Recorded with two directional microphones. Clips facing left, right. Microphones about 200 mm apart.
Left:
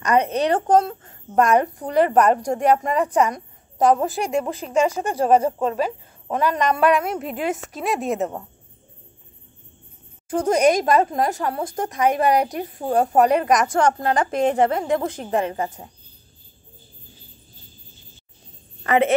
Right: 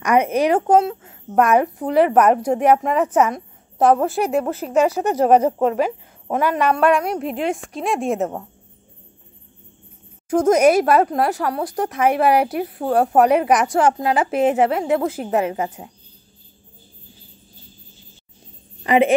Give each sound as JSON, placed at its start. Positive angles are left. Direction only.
{"t": 0.0, "sound": "a woman's voice", "side_deg": -10}
{"t": 10.3, "sound": "a woman's voice", "side_deg": -10}
{"t": 18.9, "sound": "a woman's voice", "side_deg": -15}